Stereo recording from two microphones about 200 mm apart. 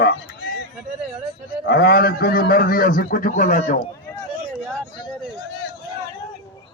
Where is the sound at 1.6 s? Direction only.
50° left (ahead or behind).